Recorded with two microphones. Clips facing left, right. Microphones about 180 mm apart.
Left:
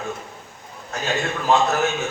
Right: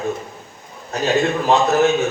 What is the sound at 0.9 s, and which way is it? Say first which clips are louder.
Speech: right 7 dB; 35° right (ahead or behind).